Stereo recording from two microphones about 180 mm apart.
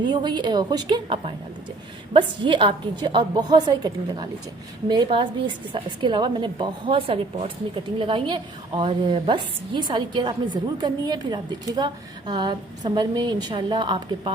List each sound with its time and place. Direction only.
0.1 s a woman's voice: 25° right (ahead or behind)